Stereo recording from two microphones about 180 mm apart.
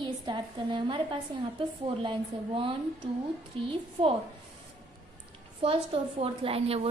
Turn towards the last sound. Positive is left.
turn(degrees=-35)  # may be behind; listen again after turning